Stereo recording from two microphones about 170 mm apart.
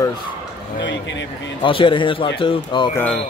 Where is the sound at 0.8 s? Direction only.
90° left.